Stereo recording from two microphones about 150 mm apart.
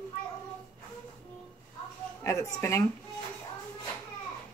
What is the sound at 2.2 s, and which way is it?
Speech, 20° left (ahead or behind).